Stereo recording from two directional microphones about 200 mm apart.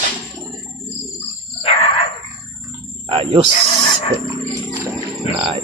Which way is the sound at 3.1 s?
30° right (ahead or behind).